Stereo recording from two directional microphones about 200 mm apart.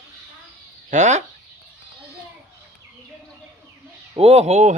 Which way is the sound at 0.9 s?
35° right (ahead or behind).